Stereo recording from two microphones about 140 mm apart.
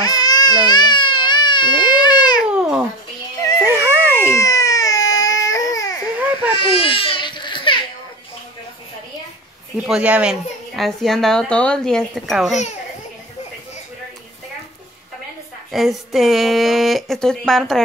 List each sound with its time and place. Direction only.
0.0 s baby cry: 30° left (ahead or behind)
2.5 s babbling: 5° right (ahead or behind)
3.6 s baby cry: 15° right (ahead or behind)
4.2 s baby cry: 20° left (ahead or behind)
6.5 s baby cry: 40° left (ahead or behind)
9.8 s speech: 10° right (ahead or behind)
15.7 s speech: centre (ahead or behind)